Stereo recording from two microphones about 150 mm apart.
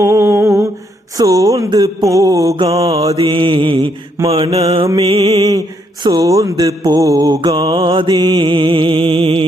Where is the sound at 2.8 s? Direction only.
40° right (ahead or behind).